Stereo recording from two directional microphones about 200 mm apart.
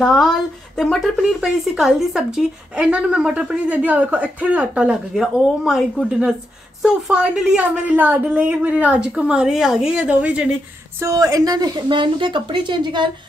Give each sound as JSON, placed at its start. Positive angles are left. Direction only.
{"t": 0.0, "sound": "speech", "side_deg": 0}
{"t": 11.0, "sound": "a woman's voice", "side_deg": -15}